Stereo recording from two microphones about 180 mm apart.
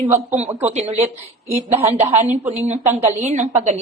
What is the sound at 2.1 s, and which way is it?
Speech, 40° right (ahead or behind).